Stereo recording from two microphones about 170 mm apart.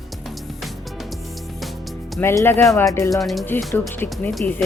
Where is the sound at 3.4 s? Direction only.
10° left (ahead or behind).